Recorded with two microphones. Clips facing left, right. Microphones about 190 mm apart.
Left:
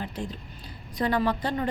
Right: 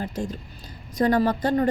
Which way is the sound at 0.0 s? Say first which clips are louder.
Right 4 dB; 45° right (ahead or behind).